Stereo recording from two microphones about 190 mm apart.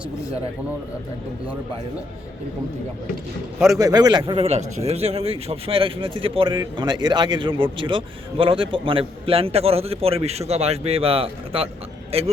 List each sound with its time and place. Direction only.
3.8 s a man's voice: 20° right (ahead or behind)